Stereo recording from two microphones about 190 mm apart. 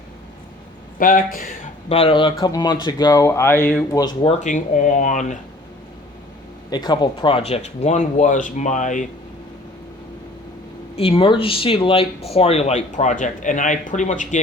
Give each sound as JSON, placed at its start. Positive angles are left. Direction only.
{"t": 0.9, "sound": "speech", "side_deg": 45}
{"t": 2.0, "sound": "speech", "side_deg": 30}
{"t": 3.9, "sound": "speech", "side_deg": 25}
{"t": 4.4, "sound": "speech", "side_deg": 40}
{"t": 6.7, "sound": "speech", "side_deg": 20}
{"t": 10.9, "sound": "speech", "side_deg": 30}